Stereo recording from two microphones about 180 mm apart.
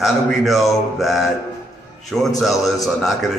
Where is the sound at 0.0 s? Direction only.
Centre (ahead or behind).